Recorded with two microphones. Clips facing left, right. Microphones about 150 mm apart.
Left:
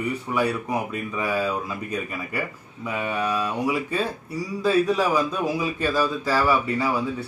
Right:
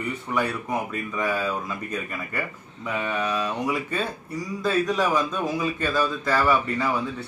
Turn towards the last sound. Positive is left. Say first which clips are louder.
# left 1 dB
turn(degrees=5)  # may be behind; listen again after turning